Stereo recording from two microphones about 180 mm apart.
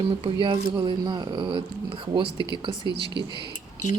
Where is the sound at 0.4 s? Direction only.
25° right (ahead or behind).